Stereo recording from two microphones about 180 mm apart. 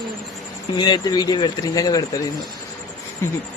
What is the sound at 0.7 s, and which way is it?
Speech, 25° left (ahead or behind).